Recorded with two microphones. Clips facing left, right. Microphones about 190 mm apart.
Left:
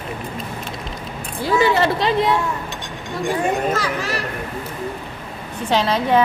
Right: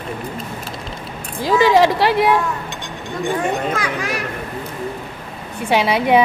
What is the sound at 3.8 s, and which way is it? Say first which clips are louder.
Speech: even; 10° right (ahead or behind).